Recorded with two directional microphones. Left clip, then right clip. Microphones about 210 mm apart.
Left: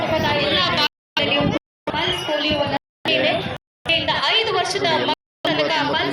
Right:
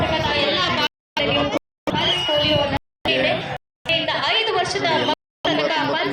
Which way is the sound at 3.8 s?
50° left (ahead or behind).